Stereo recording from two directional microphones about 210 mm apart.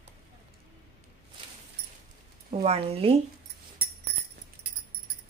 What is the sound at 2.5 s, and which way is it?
Speech, 30° right (ahead or behind).